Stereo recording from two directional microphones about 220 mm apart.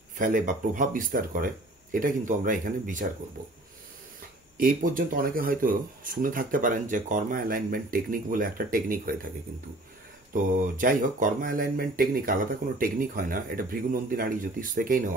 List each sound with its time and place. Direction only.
0.2 s speech: 35° right (ahead or behind)
4.6 s speech: 40° right (ahead or behind)
10.3 s speech: 35° right (ahead or behind)